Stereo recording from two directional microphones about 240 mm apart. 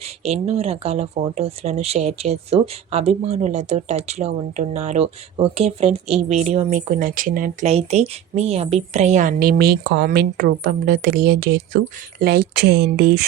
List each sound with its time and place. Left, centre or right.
0.2 s speech: right